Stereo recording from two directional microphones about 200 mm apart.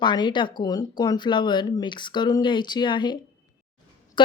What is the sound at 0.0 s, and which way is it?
Speech, 20° left (ahead or behind).